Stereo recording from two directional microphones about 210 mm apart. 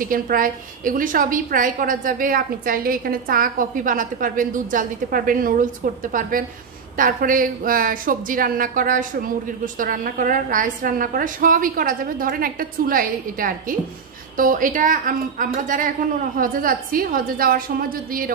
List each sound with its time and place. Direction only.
0.0 s a woman's voice: 40° right (ahead or behind)